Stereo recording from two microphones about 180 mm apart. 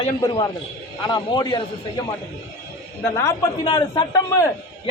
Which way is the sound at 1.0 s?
25° left (ahead or behind).